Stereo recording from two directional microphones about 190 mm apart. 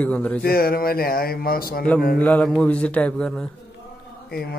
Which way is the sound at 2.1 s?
10° left (ahead or behind).